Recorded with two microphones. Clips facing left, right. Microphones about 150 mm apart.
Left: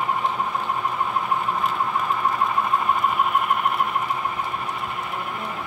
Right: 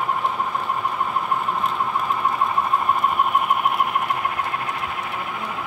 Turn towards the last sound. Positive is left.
turn(degrees=-85)